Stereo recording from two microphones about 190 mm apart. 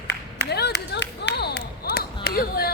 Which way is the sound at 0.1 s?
60° left (ahead or behind).